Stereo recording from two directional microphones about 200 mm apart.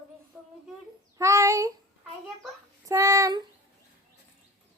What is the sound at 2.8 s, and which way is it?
Child singing, 15° right (ahead or behind).